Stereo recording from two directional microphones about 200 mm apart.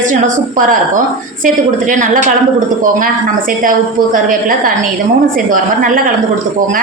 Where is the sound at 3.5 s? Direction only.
40° right (ahead or behind).